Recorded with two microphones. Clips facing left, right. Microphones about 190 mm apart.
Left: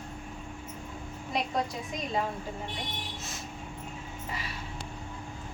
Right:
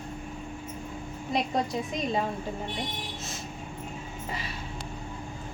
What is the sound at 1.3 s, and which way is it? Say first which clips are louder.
Speech: right 3 dB; 20° right (ahead or behind).